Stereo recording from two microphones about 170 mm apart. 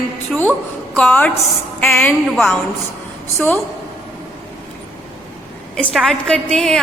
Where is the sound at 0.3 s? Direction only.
Centre (ahead or behind).